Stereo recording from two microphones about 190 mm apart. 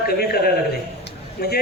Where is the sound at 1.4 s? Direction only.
50° left (ahead or behind).